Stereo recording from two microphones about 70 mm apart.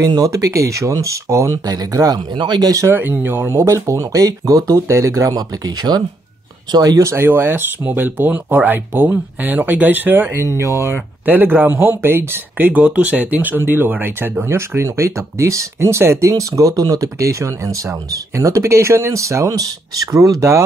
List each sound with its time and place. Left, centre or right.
0.0 s speech: right
2.9 s speech: right
5.3 s speech: right
6.7 s speech: right
7.1 s speech: right
10.4 s speech: right
11.2 s speech: right
14.5 s speech: right